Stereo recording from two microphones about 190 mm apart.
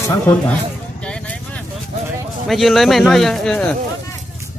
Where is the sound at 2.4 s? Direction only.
Centre (ahead or behind).